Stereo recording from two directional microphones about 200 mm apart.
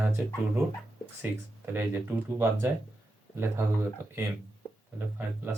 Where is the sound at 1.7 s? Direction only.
10° right (ahead or behind).